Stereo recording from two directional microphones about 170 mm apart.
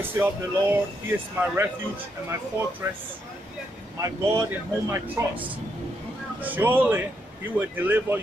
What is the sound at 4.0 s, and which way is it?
Speech, 20° right (ahead or behind).